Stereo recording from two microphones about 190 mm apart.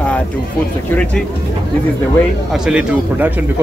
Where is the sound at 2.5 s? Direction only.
5° right (ahead or behind).